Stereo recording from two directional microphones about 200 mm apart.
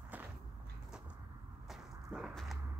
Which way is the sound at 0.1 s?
10° right (ahead or behind).